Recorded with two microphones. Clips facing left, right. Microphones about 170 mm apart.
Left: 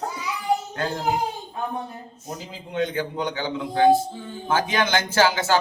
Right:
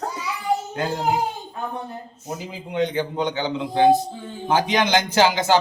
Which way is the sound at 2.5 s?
15° right (ahead or behind).